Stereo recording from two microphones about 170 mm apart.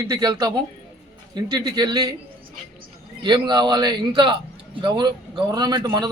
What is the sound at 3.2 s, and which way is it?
A man's voice, 25° right (ahead or behind).